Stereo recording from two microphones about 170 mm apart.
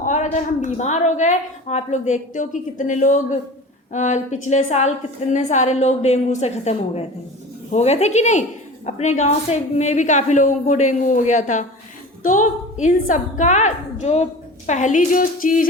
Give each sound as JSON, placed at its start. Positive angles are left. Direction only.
{"t": 0.0, "sound": "a woman's voice", "side_deg": 45}